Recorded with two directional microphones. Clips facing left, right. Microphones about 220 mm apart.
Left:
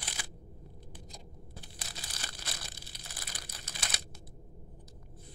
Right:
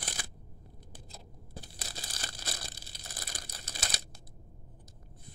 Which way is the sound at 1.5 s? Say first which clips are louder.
Right 4 dB; 35° right (ahead or behind).